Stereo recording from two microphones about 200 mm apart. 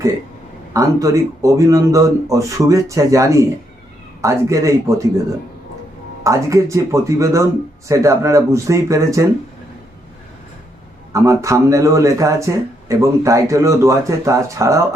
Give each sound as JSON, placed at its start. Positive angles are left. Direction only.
{"t": 0.7, "sound": "speech", "side_deg": -15}
{"t": 6.2, "sound": "speech", "side_deg": -15}
{"t": 11.1, "sound": "speech", "side_deg": -15}